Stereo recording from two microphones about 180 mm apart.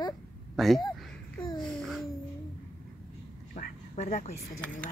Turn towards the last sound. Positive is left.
turn(degrees=40)  # may be behind; listen again after turning